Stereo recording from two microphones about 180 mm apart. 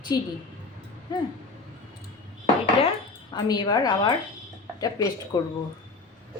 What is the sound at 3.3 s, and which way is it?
A woman's voice, 25° left (ahead or behind).